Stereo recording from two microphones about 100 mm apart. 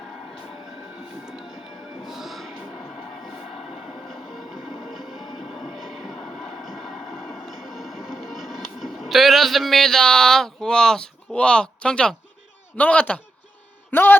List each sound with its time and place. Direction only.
2.0 s music: centre (ahead or behind)
4.1 s music: centre (ahead or behind)
12.7 s a man's voice: 15° left (ahead or behind)